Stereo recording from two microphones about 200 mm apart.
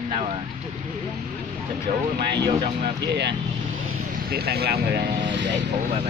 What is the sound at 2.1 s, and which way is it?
Speech, 55° right (ahead or behind).